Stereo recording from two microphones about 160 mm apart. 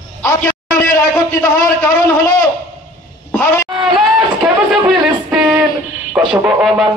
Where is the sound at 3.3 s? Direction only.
15° left (ahead or behind).